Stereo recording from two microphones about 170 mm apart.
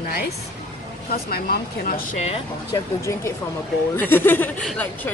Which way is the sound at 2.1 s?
40° left (ahead or behind).